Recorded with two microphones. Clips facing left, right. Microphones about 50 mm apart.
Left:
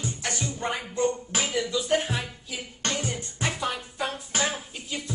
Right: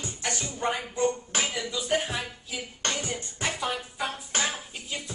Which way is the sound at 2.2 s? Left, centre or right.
Centre.